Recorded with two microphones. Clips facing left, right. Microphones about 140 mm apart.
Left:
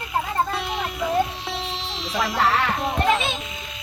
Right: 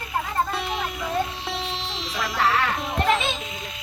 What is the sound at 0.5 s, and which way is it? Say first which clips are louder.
Music: left 1 dB; centre (ahead or behind).